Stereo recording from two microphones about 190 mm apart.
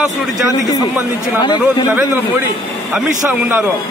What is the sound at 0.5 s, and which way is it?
Speech, 20° left (ahead or behind).